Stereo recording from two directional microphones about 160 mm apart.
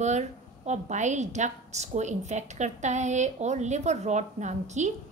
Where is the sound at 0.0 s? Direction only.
45° right (ahead or behind).